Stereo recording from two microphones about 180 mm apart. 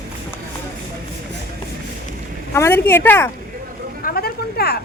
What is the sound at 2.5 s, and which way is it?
Speech, 15° left (ahead or behind).